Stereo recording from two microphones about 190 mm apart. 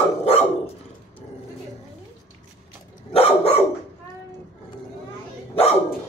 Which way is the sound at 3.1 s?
30° left (ahead or behind).